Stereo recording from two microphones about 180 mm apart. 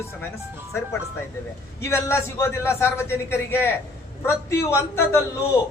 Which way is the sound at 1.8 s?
15° left (ahead or behind).